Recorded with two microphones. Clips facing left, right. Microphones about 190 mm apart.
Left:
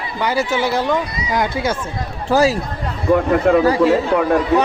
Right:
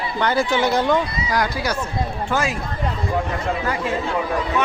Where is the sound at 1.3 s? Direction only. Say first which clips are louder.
Left 6 dB; 20° left (ahead or behind).